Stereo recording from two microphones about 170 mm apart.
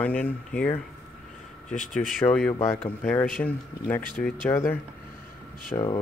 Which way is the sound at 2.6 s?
20° left (ahead or behind).